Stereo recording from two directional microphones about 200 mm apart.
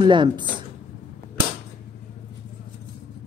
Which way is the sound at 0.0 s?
25° right (ahead or behind).